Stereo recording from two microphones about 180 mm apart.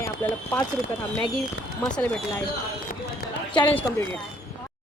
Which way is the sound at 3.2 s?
60° left (ahead or behind).